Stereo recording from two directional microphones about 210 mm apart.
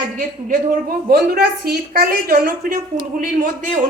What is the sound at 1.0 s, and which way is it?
A woman's voice, 45° right (ahead or behind).